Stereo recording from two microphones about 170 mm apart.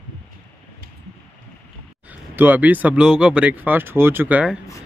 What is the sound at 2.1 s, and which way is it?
Speech, 10° right (ahead or behind).